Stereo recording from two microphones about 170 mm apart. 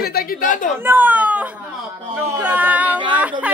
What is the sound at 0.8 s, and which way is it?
Speech, 10° right (ahead or behind).